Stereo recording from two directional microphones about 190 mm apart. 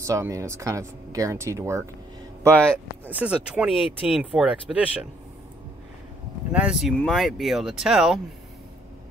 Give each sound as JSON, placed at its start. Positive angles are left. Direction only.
{"t": 0.0, "sound": "speech", "side_deg": -15}
{"t": 2.5, "sound": "speech", "side_deg": 5}
{"t": 3.1, "sound": "speech", "side_deg": -5}
{"t": 6.5, "sound": "speech", "side_deg": -5}